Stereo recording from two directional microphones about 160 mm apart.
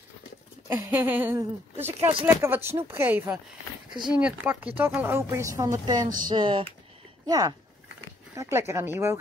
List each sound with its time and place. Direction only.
0.7 s speech: 15° right (ahead or behind)
2.0 s speech: 35° right (ahead or behind)
2.4 s speech: 15° right (ahead or behind)
6.1 s typing: 25° right (ahead or behind)
8.4 s speech: 15° right (ahead or behind)